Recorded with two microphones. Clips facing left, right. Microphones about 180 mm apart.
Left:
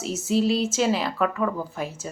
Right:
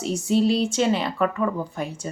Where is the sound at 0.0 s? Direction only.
Centre (ahead or behind).